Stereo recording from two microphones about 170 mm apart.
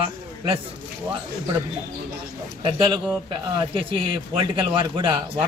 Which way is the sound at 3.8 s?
30° right (ahead or behind).